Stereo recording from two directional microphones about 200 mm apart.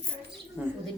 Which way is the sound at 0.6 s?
5° right (ahead or behind).